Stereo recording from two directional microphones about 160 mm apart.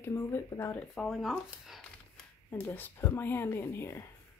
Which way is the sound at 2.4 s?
15° left (ahead or behind).